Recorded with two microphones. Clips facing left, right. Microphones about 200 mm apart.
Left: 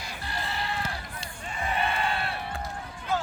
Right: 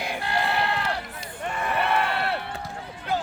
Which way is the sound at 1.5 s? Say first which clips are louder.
Right 4 dB; 65° right (ahead or behind).